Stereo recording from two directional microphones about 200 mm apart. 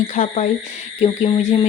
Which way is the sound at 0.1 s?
35° left (ahead or behind).